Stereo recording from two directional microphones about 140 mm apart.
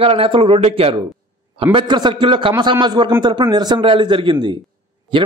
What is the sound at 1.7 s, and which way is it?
A man's voice, 35° right (ahead or behind).